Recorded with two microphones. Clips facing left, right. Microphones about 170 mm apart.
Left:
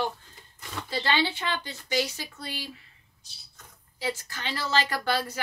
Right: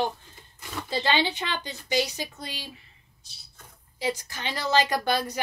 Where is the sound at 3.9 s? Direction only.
15° right (ahead or behind).